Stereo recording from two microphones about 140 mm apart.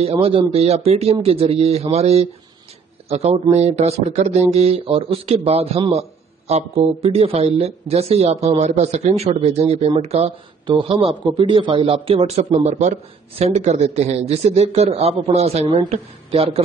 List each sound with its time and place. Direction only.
0.0 s a man's voice: 40° right (ahead or behind)